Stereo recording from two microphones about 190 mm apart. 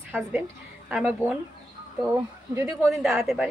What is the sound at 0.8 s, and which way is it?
Speech, 5° right (ahead or behind).